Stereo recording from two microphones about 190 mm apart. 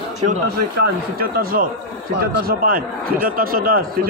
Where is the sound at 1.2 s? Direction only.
50° right (ahead or behind).